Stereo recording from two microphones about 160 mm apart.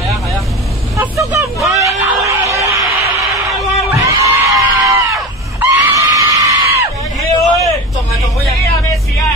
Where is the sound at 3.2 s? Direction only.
Centre (ahead or behind).